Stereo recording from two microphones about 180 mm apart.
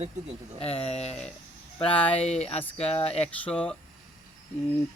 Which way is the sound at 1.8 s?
5° left (ahead or behind).